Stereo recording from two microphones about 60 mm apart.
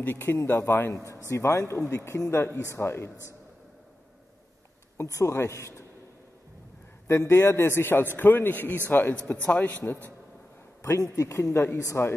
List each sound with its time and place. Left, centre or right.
0.0 s speech: left
1.3 s speech: left
5.0 s speech: left
5.3 s speech: left
7.1 s a man's voice: left
10.8 s speech: left